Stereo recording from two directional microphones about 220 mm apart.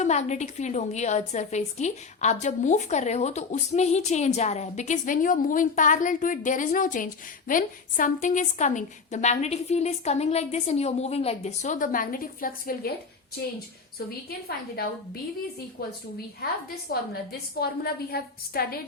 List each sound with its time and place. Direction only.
0.0 s a woman's voice: 30° left (ahead or behind)
14.3 s a woman's voice: 45° left (ahead or behind)
17.6 s a woman's voice: 45° left (ahead or behind)